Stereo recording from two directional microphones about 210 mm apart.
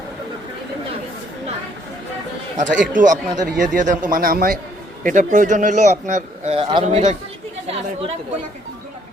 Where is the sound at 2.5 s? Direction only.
35° right (ahead or behind).